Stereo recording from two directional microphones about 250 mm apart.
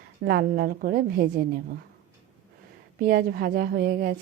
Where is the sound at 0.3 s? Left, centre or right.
Right.